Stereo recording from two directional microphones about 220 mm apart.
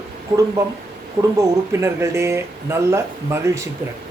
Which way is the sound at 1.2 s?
25° right (ahead or behind).